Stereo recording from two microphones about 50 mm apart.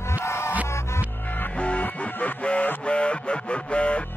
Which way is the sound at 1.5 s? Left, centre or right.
Left.